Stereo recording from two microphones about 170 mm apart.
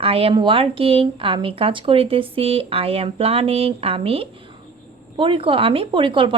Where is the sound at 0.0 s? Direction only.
35° right (ahead or behind).